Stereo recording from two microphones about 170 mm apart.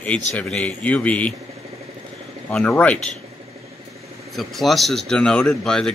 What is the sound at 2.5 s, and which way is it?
Speech, 5° left (ahead or behind).